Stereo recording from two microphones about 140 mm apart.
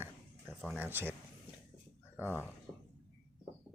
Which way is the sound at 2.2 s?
15° right (ahead or behind).